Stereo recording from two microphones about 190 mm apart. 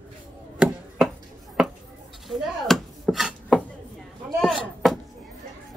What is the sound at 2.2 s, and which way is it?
Chopping, centre (ahead or behind).